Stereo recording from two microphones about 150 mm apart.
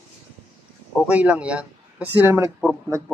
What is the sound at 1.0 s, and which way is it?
A man's voice, 10° right (ahead or behind).